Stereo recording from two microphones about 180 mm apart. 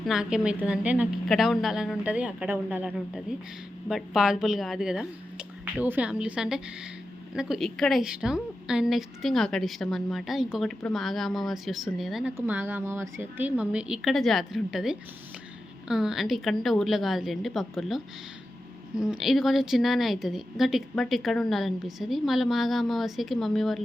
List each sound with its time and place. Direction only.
0.0 s a woman's voice: 5° right (ahead or behind)